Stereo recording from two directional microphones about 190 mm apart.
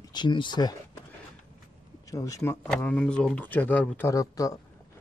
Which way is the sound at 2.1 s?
15° left (ahead or behind).